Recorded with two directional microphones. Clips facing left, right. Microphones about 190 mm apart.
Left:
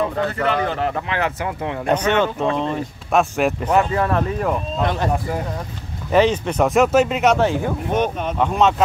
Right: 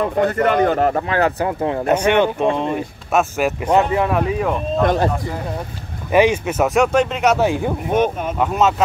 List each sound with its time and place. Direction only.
0.2 s speech: 50° right (ahead or behind)
1.9 s speech: 15° right (ahead or behind)
3.1 s speech: centre (ahead or behind)
3.7 s speech: 15° right (ahead or behind)
4.8 s speech: 40° right (ahead or behind)
6.1 s speech: 10° right (ahead or behind)